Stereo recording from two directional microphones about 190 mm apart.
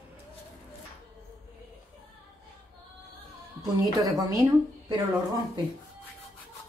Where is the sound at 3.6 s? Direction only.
20° right (ahead or behind).